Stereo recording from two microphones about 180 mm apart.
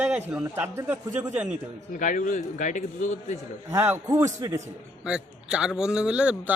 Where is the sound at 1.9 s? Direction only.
45° left (ahead or behind).